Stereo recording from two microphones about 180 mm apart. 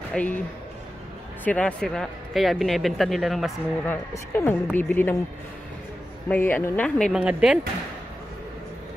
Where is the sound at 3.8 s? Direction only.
15° left (ahead or behind).